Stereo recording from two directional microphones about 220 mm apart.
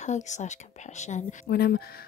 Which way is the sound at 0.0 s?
30° left (ahead or behind).